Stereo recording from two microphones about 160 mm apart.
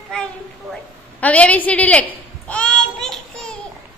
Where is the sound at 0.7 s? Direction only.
10° left (ahead or behind).